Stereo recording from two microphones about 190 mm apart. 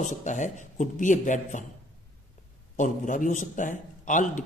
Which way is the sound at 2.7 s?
45° left (ahead or behind).